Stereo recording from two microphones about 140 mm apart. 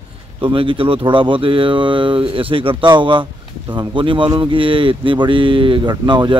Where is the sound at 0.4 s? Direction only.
35° right (ahead or behind).